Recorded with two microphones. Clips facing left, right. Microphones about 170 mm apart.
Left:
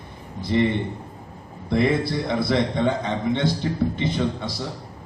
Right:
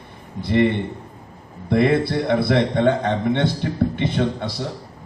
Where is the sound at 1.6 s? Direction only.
60° right (ahead or behind).